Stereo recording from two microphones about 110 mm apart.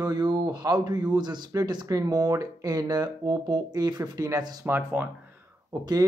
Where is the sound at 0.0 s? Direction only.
40° right (ahead or behind).